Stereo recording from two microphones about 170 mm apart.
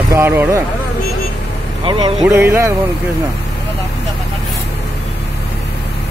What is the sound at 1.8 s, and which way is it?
Speech, 30° right (ahead or behind).